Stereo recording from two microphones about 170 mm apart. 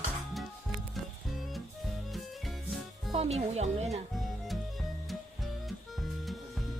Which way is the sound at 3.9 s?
Centre (ahead or behind).